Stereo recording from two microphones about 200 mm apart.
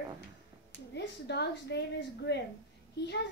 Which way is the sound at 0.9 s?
55° left (ahead or behind).